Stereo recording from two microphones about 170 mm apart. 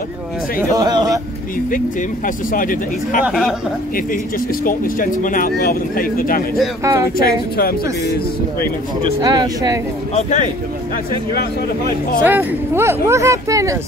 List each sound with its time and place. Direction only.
0.6 s speech: 20° right (ahead or behind)
1.7 s speech: 55° left (ahead or behind)
3.3 s speech: centre (ahead or behind)
3.9 s speech: 55° left (ahead or behind)
6.8 s speech: 20° right (ahead or behind)
7.2 s speech: 60° left (ahead or behind)
9.2 s speech: 25° right (ahead or behind)
10.1 s speech: 45° left (ahead or behind)
12.2 s speech: 10° right (ahead or behind)